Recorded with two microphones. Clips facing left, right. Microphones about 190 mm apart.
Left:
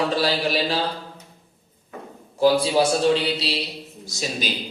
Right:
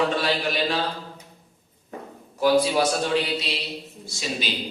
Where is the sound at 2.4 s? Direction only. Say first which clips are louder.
Left 2 dB; 30° left (ahead or behind).